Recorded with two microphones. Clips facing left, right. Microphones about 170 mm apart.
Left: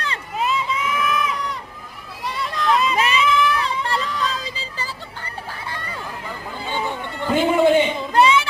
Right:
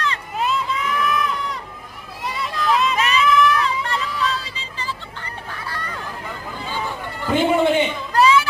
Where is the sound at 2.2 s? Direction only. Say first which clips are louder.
Even; centre (ahead or behind).